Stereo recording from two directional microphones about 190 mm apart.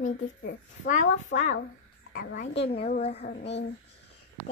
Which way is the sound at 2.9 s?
35° left (ahead or behind).